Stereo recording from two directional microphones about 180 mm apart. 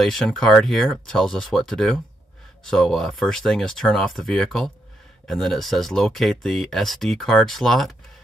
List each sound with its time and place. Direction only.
0.0 s speech: centre (ahead or behind)